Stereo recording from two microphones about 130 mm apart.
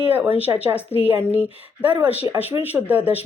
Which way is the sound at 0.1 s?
15° right (ahead or behind).